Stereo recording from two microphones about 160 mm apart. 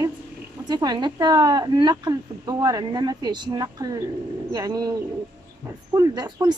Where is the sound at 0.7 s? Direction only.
25° right (ahead or behind).